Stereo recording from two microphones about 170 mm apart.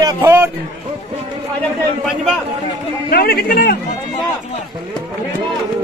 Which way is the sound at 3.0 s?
60° left (ahead or behind).